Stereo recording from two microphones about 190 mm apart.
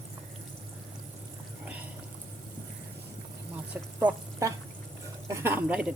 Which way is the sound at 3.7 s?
10° right (ahead or behind).